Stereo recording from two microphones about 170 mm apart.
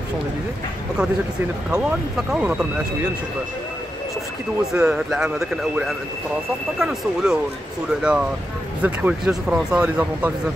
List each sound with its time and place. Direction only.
1.7 s speech: 5° right (ahead or behind)
4.7 s speech: 5° right (ahead or behind)